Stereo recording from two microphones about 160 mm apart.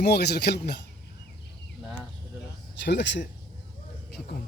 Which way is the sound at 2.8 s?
90° left.